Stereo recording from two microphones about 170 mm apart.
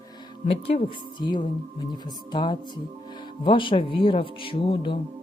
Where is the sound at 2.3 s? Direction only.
25° left (ahead or behind).